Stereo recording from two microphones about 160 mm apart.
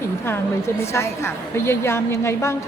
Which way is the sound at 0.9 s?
15° left (ahead or behind).